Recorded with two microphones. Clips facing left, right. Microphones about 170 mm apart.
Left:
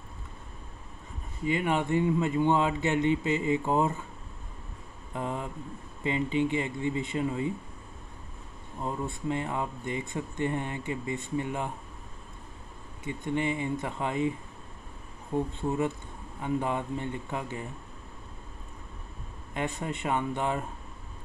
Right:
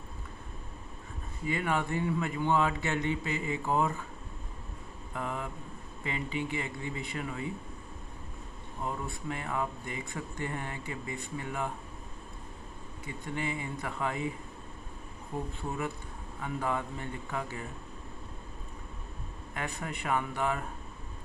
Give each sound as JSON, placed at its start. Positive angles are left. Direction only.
{"t": 1.4, "sound": "speech", "side_deg": 20}
{"t": 5.1, "sound": "speech", "side_deg": 25}
{"t": 8.8, "sound": "speech", "side_deg": 25}
{"t": 13.0, "sound": "speech", "side_deg": 20}
{"t": 16.3, "sound": "speech", "side_deg": 20}
{"t": 19.5, "sound": "speech", "side_deg": 20}